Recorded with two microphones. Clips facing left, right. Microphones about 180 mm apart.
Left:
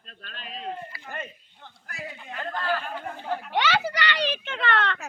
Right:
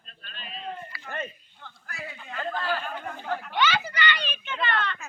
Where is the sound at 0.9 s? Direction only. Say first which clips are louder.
Right 2 dB; 20° left (ahead or behind).